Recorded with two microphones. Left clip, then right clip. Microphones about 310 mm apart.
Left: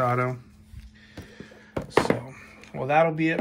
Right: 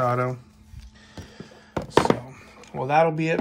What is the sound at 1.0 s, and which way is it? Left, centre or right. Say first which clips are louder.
Music: right 1 dB; centre.